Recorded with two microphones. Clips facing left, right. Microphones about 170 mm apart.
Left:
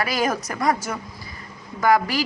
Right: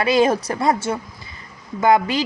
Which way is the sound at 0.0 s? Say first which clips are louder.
Right 7 dB; 25° right (ahead or behind).